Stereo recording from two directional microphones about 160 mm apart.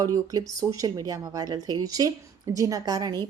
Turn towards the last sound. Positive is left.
turn(degrees=-25)  # may be behind; listen again after turning